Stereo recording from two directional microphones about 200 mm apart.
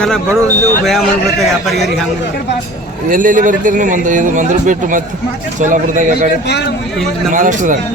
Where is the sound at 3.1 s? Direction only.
40° right (ahead or behind).